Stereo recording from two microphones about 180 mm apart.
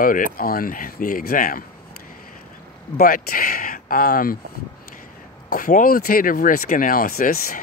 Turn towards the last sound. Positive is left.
turn(degrees=55)  # may be behind; listen again after turning